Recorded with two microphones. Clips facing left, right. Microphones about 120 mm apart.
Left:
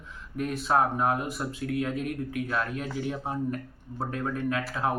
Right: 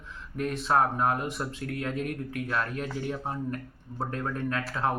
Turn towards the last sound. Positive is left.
turn(degrees=5)  # may be behind; listen again after turning